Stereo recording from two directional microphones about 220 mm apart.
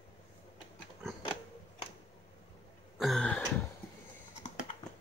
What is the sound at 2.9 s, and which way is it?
Throat clearing, centre (ahead or behind).